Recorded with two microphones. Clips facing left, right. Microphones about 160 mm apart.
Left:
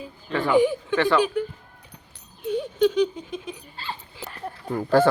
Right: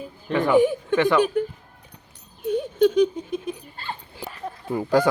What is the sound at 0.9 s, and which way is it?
Speech, 20° right (ahead or behind).